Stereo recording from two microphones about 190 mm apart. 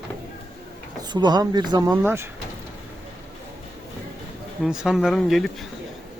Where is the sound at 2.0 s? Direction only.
10° right (ahead or behind).